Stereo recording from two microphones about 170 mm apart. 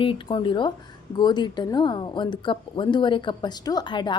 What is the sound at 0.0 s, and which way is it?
Speech, 30° left (ahead or behind).